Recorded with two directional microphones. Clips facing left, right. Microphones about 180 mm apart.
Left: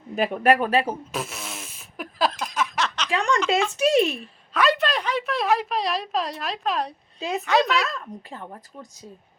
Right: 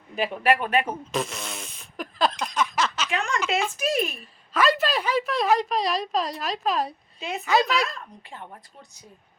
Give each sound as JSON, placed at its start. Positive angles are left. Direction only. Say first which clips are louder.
{"t": 0.2, "sound": "speech", "louder": "left 3 dB", "side_deg": 45}
{"t": 1.1, "sound": "fart", "louder": "right 3 dB", "side_deg": 5}
{"t": 3.1, "sound": "a sound", "louder": "left 4 dB", "side_deg": 35}
{"t": 3.8, "sound": "speech", "louder": "left 8 dB", "side_deg": 25}
{"t": 4.1, "sound": "a woman's voice", "louder": "left 1 dB", "side_deg": 0}
{"t": 7.9, "sound": "speech", "louder": "left 5 dB", "side_deg": 35}